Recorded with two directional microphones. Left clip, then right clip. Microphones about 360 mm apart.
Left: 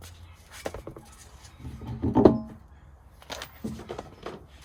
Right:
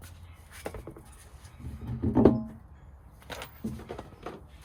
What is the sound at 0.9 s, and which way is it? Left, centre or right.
Patter, left.